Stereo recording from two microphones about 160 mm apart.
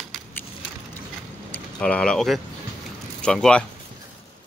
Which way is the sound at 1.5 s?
5° left (ahead or behind).